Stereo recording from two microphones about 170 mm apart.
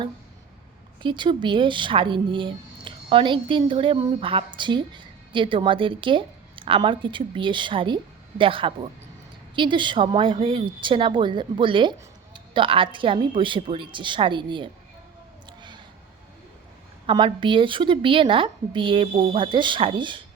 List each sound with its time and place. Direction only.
1.0 s speech: 30° right (ahead or behind)
15.4 s a sound: 25° right (ahead or behind)
17.1 s speech: 30° right (ahead or behind)